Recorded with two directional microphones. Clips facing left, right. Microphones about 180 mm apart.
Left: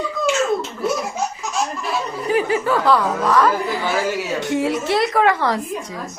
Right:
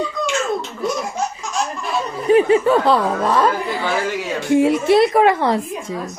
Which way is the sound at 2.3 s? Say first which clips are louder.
Right 6 dB; 25° right (ahead or behind).